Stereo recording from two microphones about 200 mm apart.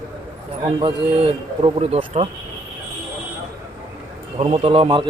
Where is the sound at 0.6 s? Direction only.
25° right (ahead or behind).